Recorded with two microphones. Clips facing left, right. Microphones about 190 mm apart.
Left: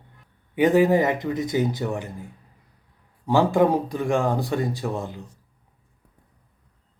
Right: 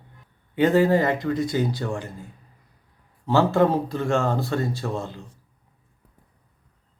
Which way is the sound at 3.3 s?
15° left (ahead or behind).